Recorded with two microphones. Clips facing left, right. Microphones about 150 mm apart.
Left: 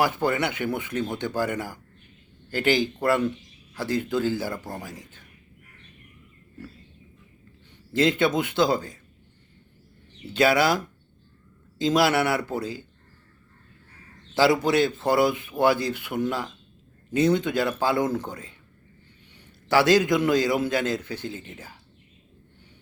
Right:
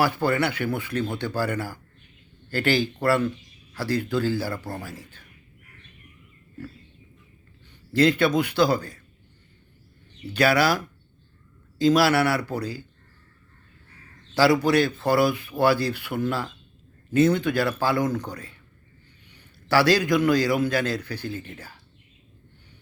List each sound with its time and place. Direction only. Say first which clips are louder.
0.0 s a man's voice: right 1 dB; 20° left (ahead or behind)
7.9 s a man's voice: right 2 dB; 20° left (ahead or behind)
10.3 s a man's voice: even; 20° left (ahead or behind)
14.3 s a man's voice: right 1 dB; 20° left (ahead or behind)